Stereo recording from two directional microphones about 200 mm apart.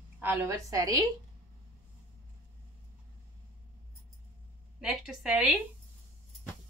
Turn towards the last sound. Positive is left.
turn(degrees=-5)  # may be behind; listen again after turning